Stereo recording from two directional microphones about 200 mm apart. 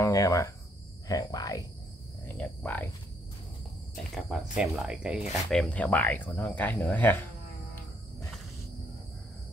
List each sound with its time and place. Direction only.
0.0 s speech: 15° left (ahead or behind)
3.9 s speech: centre (ahead or behind)